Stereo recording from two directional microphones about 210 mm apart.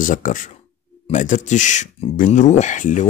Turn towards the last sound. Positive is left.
turn(degrees=35)  # may be behind; listen again after turning